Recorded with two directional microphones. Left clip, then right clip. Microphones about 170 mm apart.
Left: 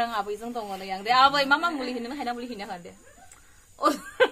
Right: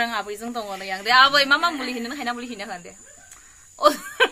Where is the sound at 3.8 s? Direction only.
20° right (ahead or behind).